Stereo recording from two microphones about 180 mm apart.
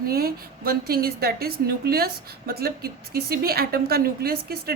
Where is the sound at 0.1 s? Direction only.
55° right (ahead or behind).